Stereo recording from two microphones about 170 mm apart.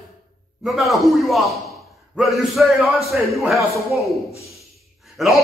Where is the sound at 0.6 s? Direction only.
Centre (ahead or behind).